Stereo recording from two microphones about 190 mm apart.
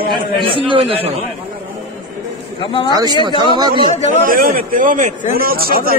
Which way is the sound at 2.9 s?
20° right (ahead or behind).